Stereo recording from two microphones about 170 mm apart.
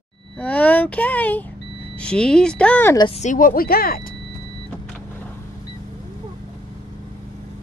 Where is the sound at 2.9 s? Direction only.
30° left (ahead or behind).